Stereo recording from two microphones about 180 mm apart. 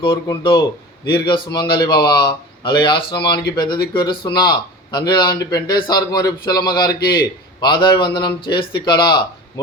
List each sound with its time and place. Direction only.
0.0 s a man's voice: 30° left (ahead or behind)
3.6 s speech: 60° left (ahead or behind)
4.4 s a man's voice: 25° left (ahead or behind)